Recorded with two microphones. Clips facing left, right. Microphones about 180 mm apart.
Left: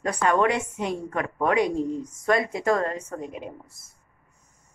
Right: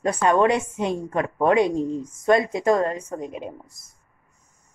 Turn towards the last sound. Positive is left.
turn(degrees=-20)  # may be behind; listen again after turning